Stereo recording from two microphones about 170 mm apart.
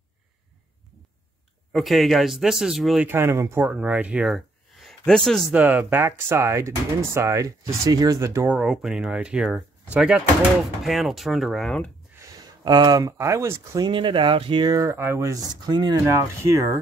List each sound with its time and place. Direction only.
1.7 s speech: centre (ahead or behind)
3.1 s speech: 15° right (ahead or behind); by 5.4 s 5° left (ahead or behind)
5.5 s speech: 10° right (ahead or behind)
8.5 s speech: 5° right (ahead or behind)
12.2 s speech: 20° right (ahead or behind)